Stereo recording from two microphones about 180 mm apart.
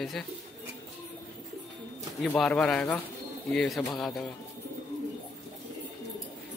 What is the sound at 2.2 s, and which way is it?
A man's voice, 5° left (ahead or behind).